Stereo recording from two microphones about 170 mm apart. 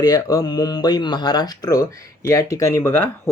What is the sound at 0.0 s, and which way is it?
Speech, 20° left (ahead or behind).